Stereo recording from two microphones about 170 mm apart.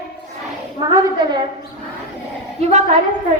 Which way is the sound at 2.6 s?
40° right (ahead or behind).